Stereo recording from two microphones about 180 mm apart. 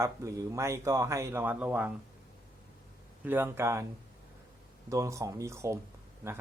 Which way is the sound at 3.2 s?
10° right (ahead or behind).